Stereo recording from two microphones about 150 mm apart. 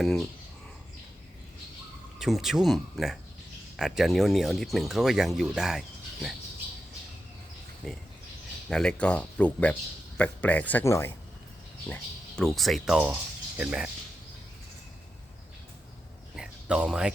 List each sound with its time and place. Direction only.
0.0 s speech: centre (ahead or behind)
2.1 s speech: centre (ahead or behind)
8.7 s speech: 5° left (ahead or behind)
12.4 s speech: centre (ahead or behind)
16.3 s a sound: 5° right (ahead or behind)